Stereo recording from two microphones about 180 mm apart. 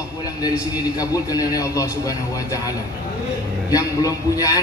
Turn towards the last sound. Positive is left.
turn(degrees=20)  # may be behind; listen again after turning